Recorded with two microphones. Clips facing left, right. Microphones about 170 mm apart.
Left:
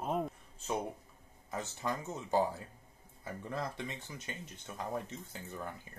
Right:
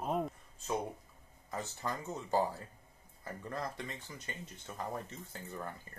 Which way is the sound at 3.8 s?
20° left (ahead or behind).